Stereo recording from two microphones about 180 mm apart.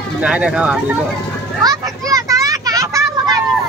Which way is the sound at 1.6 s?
20° right (ahead or behind).